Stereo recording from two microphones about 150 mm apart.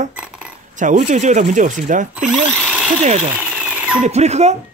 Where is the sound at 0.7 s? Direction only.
55° right (ahead or behind).